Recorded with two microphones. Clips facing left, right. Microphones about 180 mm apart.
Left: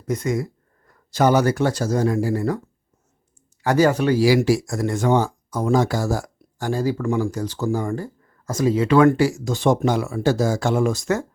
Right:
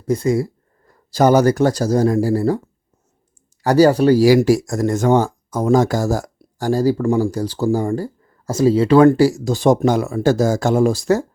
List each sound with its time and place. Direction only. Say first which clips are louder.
0.0 s speech: right 6 dB; 30° right (ahead or behind)
3.6 s speech: right 5 dB; 35° right (ahead or behind)